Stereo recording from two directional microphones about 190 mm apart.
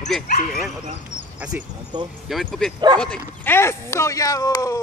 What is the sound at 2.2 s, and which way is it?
Speech, centre (ahead or behind).